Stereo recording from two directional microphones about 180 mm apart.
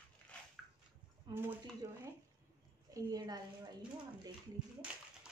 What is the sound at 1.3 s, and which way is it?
A woman's voice, 25° right (ahead or behind).